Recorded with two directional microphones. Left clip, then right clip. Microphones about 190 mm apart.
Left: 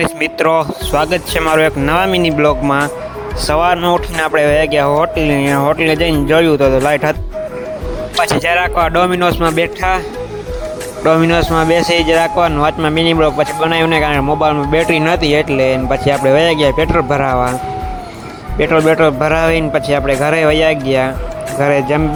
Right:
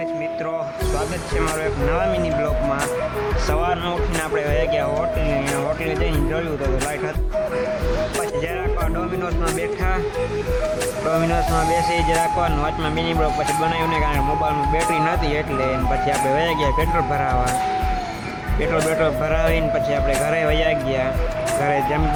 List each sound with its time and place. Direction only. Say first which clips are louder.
0.2 s speech: left 11 dB; 50° left (ahead or behind)
8.2 s speech: left 11 dB; 50° left (ahead or behind)
11.1 s speech: left 10 dB; 35° left (ahead or behind)
18.6 s speech: left 9 dB; 35° left (ahead or behind)